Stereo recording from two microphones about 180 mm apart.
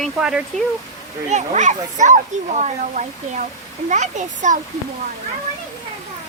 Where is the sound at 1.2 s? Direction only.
40° right (ahead or behind).